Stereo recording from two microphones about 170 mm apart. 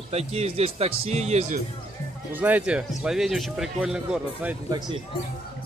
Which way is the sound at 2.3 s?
10° right (ahead or behind).